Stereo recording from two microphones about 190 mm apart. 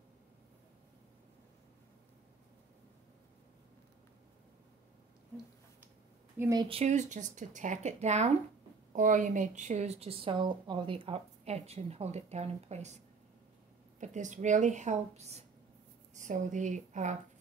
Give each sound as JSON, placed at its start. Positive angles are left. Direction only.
{"t": 6.3, "sound": "speech", "side_deg": -15}
{"t": 6.8, "sound": "a woman's voice", "side_deg": -40}